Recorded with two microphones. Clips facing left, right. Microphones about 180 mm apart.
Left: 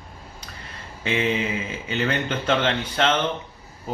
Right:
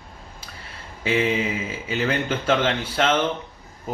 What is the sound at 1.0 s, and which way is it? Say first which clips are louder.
A man's voice: right 2 dB; 5° right (ahead or behind).